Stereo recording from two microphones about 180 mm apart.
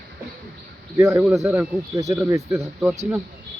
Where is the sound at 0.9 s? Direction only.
15° right (ahead or behind).